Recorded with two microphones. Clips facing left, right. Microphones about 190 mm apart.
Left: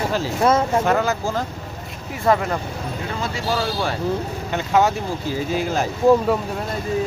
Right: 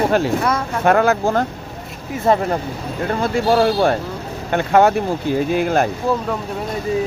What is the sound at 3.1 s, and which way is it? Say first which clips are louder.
Speech: right 9 dB; 55° right (ahead or behind).